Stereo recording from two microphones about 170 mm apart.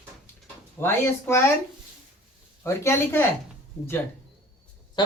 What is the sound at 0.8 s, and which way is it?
Speech, 15° left (ahead or behind).